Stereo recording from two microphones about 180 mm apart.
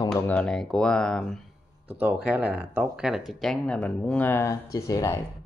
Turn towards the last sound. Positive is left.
turn(degrees=20)  # may be behind; listen again after turning